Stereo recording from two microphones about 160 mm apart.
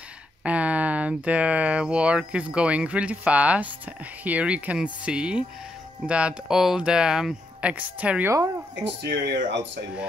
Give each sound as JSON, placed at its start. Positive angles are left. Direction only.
{"t": 0.4, "sound": "speech", "side_deg": -10}
{"t": 9.0, "sound": "speech", "side_deg": -90}